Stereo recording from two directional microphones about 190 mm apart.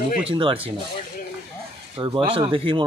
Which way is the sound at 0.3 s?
25° right (ahead or behind).